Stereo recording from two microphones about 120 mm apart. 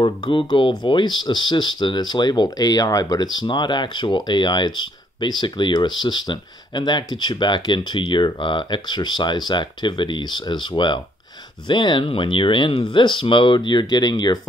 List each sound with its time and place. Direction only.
0.0 s speech: 40° left (ahead or behind)